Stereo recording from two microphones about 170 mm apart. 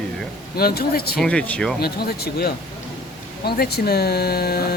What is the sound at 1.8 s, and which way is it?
Speech, 70° left (ahead or behind).